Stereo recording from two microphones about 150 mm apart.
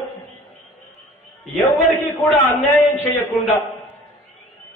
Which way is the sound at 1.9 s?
20° left (ahead or behind).